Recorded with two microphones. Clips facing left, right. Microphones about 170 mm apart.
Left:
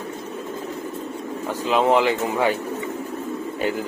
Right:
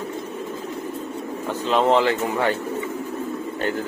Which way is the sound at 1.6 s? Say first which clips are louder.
Even; 5° left (ahead or behind).